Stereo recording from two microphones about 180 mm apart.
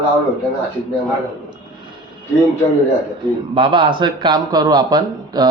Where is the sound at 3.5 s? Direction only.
25° right (ahead or behind).